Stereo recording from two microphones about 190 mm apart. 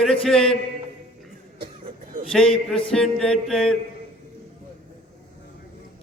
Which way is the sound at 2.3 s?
Centre (ahead or behind).